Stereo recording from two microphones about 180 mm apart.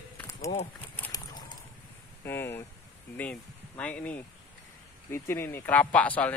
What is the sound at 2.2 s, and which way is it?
Speech, 15° left (ahead or behind).